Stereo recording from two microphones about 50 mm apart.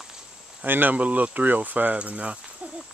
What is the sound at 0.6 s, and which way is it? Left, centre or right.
Speech, right.